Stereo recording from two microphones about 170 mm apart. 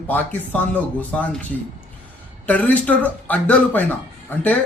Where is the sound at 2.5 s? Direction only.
10° left (ahead or behind).